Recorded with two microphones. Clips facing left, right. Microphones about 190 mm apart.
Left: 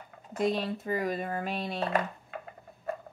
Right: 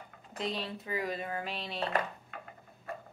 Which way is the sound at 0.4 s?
50° left (ahead or behind).